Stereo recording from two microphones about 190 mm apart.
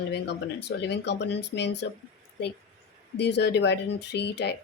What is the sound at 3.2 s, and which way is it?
A woman's voice, 65° left (ahead or behind).